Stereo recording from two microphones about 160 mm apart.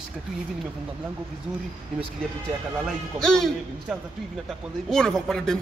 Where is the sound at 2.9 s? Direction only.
5° left (ahead or behind).